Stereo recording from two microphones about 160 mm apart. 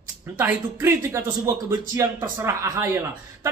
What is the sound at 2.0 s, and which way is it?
Speech, 15° right (ahead or behind).